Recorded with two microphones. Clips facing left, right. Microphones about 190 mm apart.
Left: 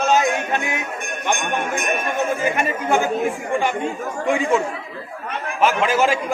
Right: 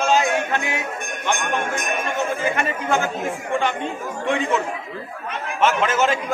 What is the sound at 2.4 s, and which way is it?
Speech, 15° left (ahead or behind).